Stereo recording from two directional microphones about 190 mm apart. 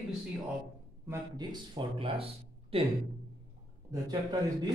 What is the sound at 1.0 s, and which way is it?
Speech, 20° right (ahead or behind).